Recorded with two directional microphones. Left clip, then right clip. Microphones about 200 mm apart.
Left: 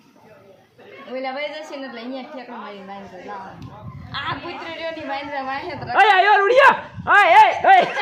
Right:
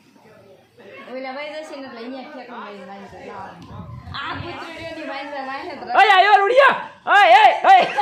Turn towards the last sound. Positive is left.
turn(degrees=20)  # may be behind; listen again after turning